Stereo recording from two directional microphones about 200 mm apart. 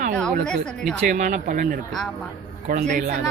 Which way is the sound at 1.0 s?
40° right (ahead or behind).